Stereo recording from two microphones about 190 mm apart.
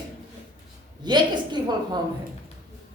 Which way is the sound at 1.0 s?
25° right (ahead or behind).